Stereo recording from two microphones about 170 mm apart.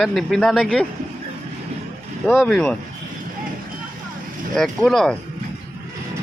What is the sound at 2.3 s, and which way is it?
Speech, centre (ahead or behind).